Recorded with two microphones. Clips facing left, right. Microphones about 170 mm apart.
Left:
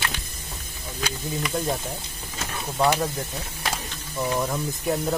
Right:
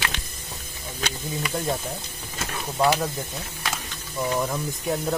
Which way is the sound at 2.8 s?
10° right (ahead or behind).